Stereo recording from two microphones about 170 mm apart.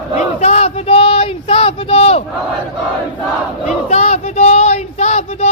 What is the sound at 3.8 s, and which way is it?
Child singing, 40° left (ahead or behind).